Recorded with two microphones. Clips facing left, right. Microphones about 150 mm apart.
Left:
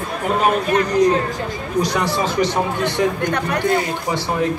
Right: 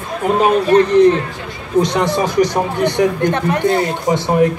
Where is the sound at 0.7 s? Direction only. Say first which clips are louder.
Right 8 dB; 30° right (ahead or behind).